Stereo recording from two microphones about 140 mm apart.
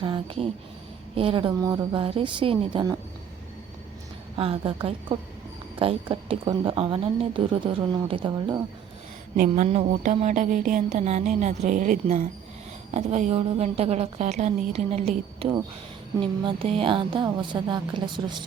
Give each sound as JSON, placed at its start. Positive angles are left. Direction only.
{"t": 0.0, "sound": "speech", "side_deg": -40}
{"t": 1.6, "sound": "speech", "side_deg": -25}
{"t": 4.4, "sound": "speech", "side_deg": -40}
{"t": 9.3, "sound": "speech", "side_deg": -70}
{"t": 9.6, "sound": "a sound", "side_deg": -55}
{"t": 12.9, "sound": "a woman's voice", "side_deg": -55}